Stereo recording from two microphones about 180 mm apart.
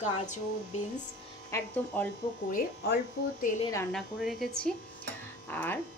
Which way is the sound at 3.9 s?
Centre (ahead or behind).